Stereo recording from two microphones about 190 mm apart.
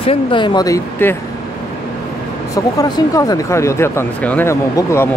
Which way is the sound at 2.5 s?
20° left (ahead or behind).